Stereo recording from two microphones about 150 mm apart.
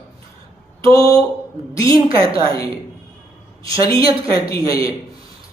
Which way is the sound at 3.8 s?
25° left (ahead or behind).